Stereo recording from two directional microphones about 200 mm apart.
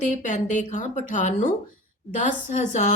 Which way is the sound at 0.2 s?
35° left (ahead or behind).